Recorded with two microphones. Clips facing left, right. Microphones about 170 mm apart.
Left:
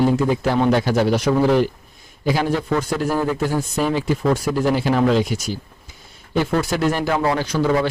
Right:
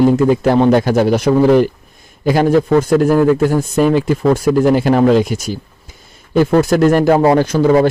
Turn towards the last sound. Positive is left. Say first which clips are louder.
# right 8 dB
turn(degrees=-45)  # may be behind; listen again after turning